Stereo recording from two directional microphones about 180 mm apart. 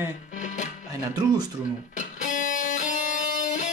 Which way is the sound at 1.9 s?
45° left (ahead or behind).